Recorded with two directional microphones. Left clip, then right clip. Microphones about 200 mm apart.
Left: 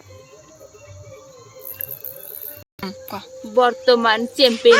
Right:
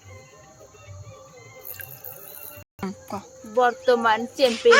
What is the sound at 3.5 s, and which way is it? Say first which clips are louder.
Speech: left 4 dB; 45° left (ahead or behind).